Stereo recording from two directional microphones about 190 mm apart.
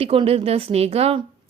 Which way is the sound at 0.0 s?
30° right (ahead or behind).